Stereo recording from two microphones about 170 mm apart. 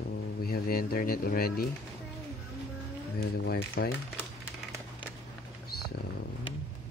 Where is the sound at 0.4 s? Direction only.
65° left (ahead or behind).